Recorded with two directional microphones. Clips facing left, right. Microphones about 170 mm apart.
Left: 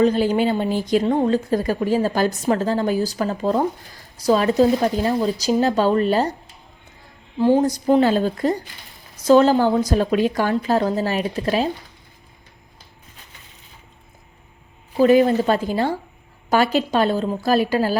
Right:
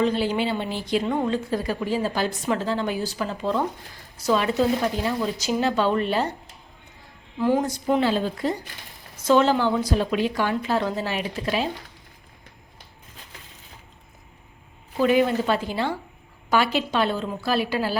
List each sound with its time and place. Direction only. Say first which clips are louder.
0.0 s a woman's voice: left 5 dB; 45° left (ahead or behind)
7.3 s speech: left 5 dB; 30° left (ahead or behind)
14.9 s a woman's voice: left 5 dB; 40° left (ahead or behind)